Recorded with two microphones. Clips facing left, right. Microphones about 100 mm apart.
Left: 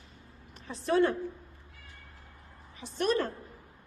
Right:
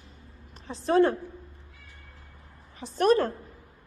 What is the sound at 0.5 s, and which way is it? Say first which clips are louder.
Speech: right 5 dB; 30° right (ahead or behind).